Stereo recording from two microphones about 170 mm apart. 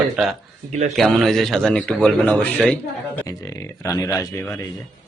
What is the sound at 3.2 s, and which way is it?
Speech, 20° left (ahead or behind).